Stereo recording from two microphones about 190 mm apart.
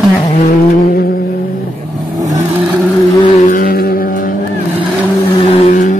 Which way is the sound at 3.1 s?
25° left (ahead or behind).